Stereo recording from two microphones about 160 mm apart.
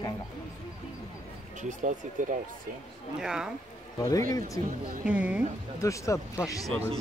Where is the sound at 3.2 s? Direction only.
5° right (ahead or behind).